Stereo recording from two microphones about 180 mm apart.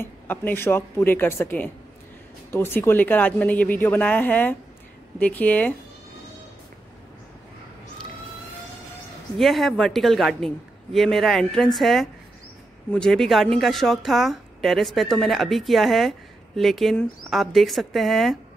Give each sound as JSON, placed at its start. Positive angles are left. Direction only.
{"t": 0.0, "sound": "speech", "side_deg": 10}
{"t": 9.4, "sound": "a woman's voice", "side_deg": 0}